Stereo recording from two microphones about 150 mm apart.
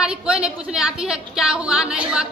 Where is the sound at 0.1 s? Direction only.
5° right (ahead or behind).